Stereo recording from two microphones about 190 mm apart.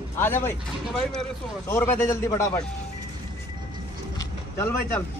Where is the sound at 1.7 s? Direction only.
15° left (ahead or behind).